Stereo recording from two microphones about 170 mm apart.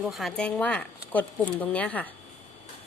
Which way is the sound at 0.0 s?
Centre (ahead or behind).